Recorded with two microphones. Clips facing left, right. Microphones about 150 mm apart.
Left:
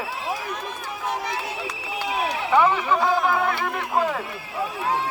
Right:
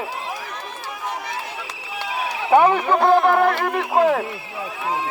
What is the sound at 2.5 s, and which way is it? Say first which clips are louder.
Speech: right 5 dB; 50° right (ahead or behind).